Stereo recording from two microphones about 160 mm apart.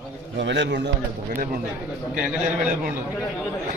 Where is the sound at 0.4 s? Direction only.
90° right.